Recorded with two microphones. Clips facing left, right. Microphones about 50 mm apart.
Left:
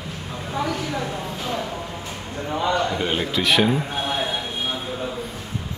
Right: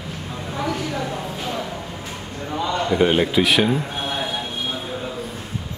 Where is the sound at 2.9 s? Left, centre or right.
Centre.